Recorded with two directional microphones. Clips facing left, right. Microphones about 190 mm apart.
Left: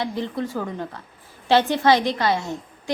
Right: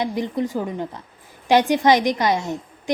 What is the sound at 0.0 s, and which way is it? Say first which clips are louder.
A woman's voice: right 3 dB; 15° right (ahead or behind).